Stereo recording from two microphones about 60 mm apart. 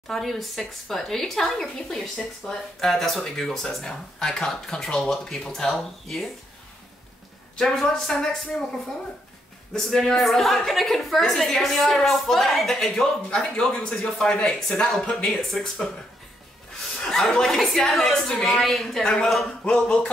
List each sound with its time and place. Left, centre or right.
0.1 s a woman's voice: centre
7.5 s a woman's voice: centre
17.0 s a woman's voice: centre
19.0 s a woman's voice: centre